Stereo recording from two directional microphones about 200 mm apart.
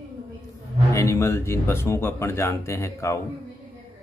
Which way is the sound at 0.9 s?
15° left (ahead or behind).